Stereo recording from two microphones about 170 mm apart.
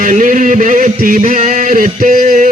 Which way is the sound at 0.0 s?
50° right (ahead or behind).